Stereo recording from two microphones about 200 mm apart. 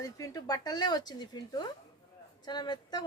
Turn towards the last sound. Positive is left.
turn(degrees=20)  # may be behind; listen again after turning